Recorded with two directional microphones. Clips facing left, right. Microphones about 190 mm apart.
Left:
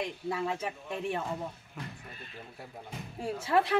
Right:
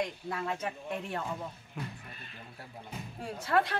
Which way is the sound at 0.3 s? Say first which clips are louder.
Left 3 dB; 10° left (ahead or behind).